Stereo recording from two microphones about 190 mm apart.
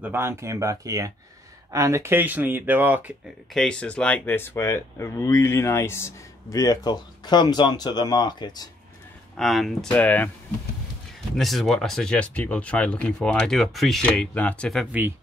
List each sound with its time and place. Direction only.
0.0 s speech: 10° right (ahead or behind)
3.5 s speech: 5° left (ahead or behind); by 8.6 s 20° left (ahead or behind)
9.4 s speech: centre (ahead or behind)
11.3 s speech: centre (ahead or behind)